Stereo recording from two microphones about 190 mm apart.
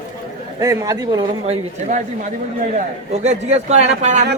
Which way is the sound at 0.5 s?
15° right (ahead or behind).